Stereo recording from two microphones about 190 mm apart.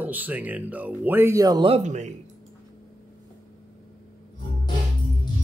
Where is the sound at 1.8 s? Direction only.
40° right (ahead or behind).